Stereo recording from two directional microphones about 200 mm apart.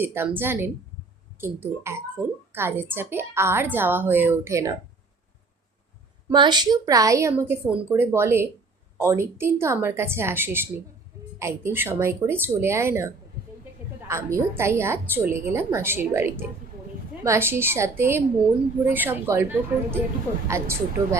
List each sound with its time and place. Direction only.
0.0 s a woman's voice: 10° right (ahead or behind)
6.3 s a woman's voice: 20° right (ahead or behind)